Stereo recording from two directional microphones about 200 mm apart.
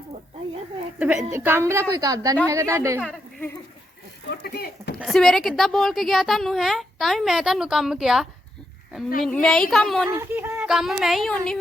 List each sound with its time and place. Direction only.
0.9 s a woman's voice: 5° right (ahead or behind)
3.0 s speech: 5° left (ahead or behind)
4.3 s speech: 50° left (ahead or behind)
4.9 s a woman's voice: centre (ahead or behind)
10.1 s a woman's voice: 15° right (ahead or behind); by 11.6 s 5° left (ahead or behind)